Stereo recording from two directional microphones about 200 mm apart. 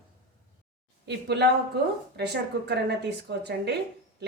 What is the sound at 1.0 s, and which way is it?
A woman's voice, 55° right (ahead or behind).